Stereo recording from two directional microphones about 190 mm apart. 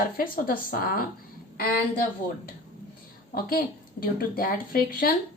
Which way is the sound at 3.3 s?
50° left (ahead or behind).